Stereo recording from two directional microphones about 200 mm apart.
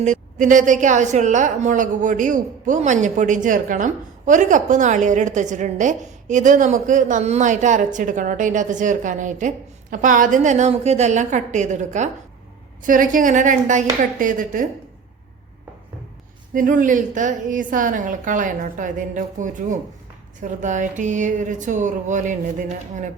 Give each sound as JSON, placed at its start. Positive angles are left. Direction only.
{"t": 0.0, "sound": "a woman's voice", "side_deg": -40}
{"t": 16.6, "sound": "a woman's voice", "side_deg": -40}